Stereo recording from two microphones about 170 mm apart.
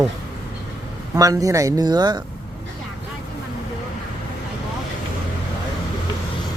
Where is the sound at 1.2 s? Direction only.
20° right (ahead or behind).